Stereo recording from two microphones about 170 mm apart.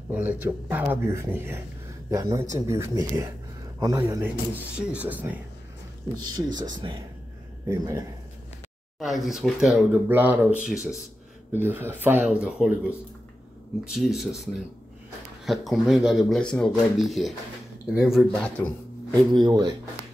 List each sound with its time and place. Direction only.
0.1 s speech: 10° right (ahead or behind)
6.1 s speech: 25° right (ahead or behind)
9.0 s speech: centre (ahead or behind)
13.9 s speech: centre (ahead or behind)
19.3 s speech: 25° right (ahead or behind)